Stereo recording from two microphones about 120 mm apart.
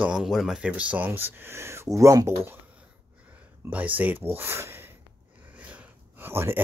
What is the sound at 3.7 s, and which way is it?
Speech, 15° right (ahead or behind).